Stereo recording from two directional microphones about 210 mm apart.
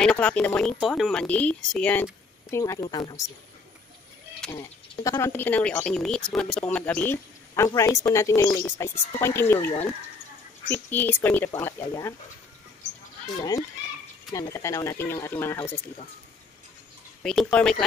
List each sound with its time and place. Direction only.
0.0 s speech: 5° left (ahead or behind); by 3.3 s 20° left (ahead or behind)
4.5 s speech: 15° left (ahead or behind)
14.3 s speech: 15° left (ahead or behind)
17.2 s speech: 5° left (ahead or behind)